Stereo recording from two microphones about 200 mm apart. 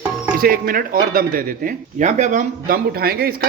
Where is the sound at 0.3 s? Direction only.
45° right (ahead or behind).